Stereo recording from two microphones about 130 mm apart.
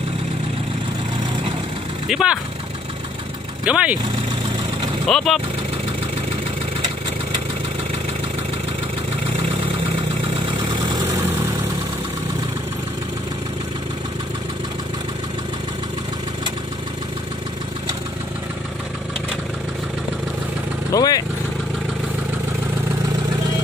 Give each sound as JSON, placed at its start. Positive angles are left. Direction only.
{"t": 2.0, "sound": "speech", "side_deg": -5}
{"t": 3.6, "sound": "speech", "side_deg": -10}
{"t": 5.0, "sound": "speech", "side_deg": 0}
{"t": 9.4, "sound": "vehicle", "side_deg": -45}
{"t": 20.9, "sound": "vehicle", "side_deg": 30}